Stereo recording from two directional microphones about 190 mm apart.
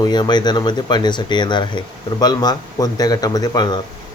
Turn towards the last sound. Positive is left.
turn(degrees=20)  # may be behind; listen again after turning